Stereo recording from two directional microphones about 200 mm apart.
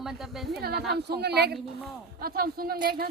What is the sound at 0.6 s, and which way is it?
A woman's voice, 50° right (ahead or behind).